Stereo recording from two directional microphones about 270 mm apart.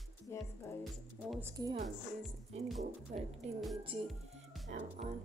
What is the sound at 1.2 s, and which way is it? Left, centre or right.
Speech, centre.